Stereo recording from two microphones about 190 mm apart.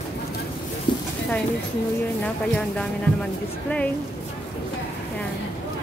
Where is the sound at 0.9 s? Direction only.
25° left (ahead or behind).